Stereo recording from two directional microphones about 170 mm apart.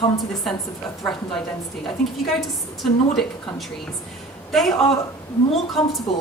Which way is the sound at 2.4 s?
Centre (ahead or behind).